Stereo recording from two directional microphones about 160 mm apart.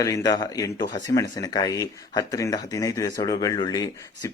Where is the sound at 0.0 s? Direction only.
20° left (ahead or behind).